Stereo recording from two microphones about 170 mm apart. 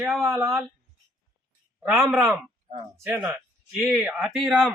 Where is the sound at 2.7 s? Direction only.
35° right (ahead or behind).